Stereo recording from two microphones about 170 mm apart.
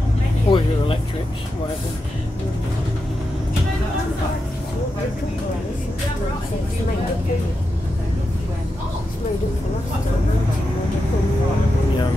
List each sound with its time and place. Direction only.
0.5 s vehicle: 30° left (ahead or behind)